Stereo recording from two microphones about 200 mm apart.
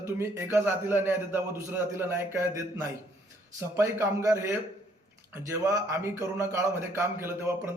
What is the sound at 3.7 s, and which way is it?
A man's voice, 15° right (ahead or behind).